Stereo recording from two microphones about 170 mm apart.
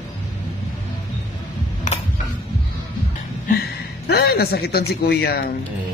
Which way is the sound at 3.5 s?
65° left (ahead or behind).